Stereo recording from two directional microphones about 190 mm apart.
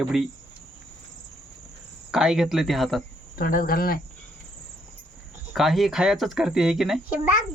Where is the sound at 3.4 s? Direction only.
45° left (ahead or behind).